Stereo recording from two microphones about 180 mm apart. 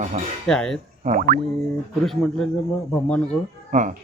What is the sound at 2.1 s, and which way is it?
Speech, 5° left (ahead or behind).